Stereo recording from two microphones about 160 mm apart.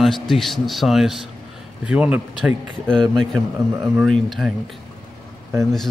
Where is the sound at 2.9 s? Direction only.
5° left (ahead or behind).